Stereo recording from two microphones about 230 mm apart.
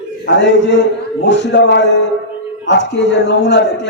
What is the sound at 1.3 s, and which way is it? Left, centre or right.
A man's voice, left.